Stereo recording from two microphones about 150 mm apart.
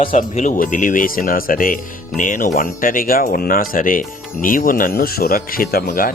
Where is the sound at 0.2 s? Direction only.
60° left (ahead or behind).